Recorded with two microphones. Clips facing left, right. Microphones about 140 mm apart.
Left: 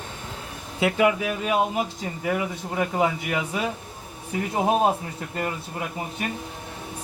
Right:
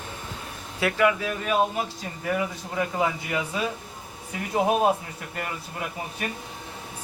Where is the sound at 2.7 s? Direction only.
20° left (ahead or behind).